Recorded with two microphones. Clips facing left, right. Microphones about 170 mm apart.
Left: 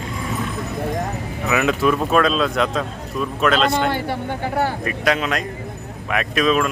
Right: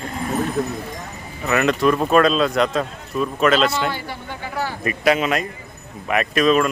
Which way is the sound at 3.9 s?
55° left (ahead or behind).